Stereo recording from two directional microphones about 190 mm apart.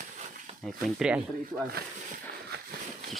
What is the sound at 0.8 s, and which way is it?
Speech, 5° right (ahead or behind).